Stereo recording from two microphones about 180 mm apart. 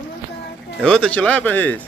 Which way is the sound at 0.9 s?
5° left (ahead or behind).